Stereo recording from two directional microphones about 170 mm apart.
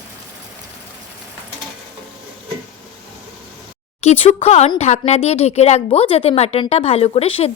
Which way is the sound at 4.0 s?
40° left (ahead or behind).